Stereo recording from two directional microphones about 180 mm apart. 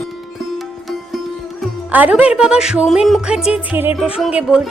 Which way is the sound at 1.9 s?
10° right (ahead or behind).